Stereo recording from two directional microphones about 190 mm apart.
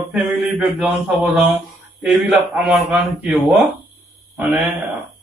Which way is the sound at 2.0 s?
5° right (ahead or behind).